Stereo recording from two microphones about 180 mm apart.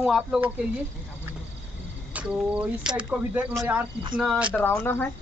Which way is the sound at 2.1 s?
5° right (ahead or behind).